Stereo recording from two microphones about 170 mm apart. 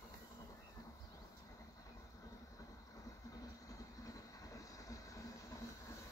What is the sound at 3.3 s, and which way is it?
Vehicle, 20° left (ahead or behind).